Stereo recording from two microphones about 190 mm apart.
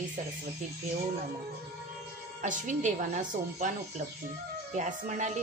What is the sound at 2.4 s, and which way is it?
Speech, 40° right (ahead or behind).